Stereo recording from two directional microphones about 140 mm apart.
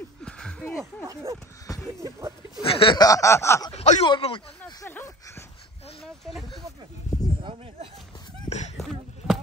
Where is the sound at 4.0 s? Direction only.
35° left (ahead or behind).